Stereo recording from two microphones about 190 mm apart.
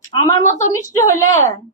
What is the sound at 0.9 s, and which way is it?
Speech, 15° left (ahead or behind).